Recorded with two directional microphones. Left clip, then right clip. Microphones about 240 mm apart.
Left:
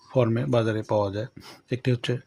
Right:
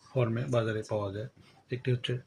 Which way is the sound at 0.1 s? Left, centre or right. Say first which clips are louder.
Left 7 dB; left.